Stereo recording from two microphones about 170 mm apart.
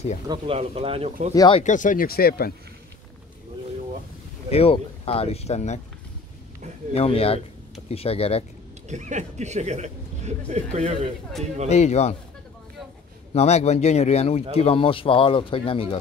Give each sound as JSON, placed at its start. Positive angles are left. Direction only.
{"t": 0.3, "sound": "speech", "side_deg": -35}
{"t": 1.3, "sound": "speech", "side_deg": 25}
{"t": 1.6, "sound": "speech", "side_deg": 50}
{"t": 4.5, "sound": "speech", "side_deg": 35}
{"t": 6.9, "sound": "speech", "side_deg": 35}
{"t": 8.8, "sound": "speech", "side_deg": -45}
{"t": 11.7, "sound": "speech", "side_deg": 40}
{"t": 13.3, "sound": "speech", "side_deg": 40}